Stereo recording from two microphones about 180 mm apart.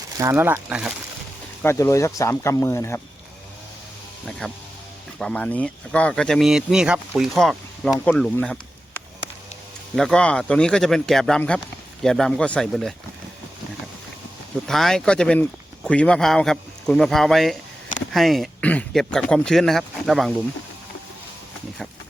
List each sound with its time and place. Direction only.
0.2 s speech: 15° right (ahead or behind)
1.6 s speech: 15° left (ahead or behind)
4.3 s speech: 5° left (ahead or behind)
8.4 s a sound: 10° left (ahead or behind)
9.9 s speech: centre (ahead or behind)
14.7 s speech: centre (ahead or behind)